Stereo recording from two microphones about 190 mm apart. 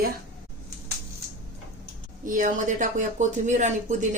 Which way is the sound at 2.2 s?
45° right (ahead or behind).